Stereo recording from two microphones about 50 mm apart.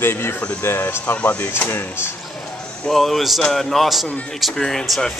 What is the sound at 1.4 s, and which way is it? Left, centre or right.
Speech, left.